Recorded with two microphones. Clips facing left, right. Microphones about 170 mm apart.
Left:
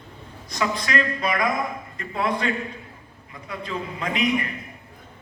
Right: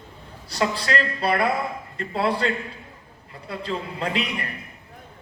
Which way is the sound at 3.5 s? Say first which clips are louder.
Right 1 dB; 30° right (ahead or behind).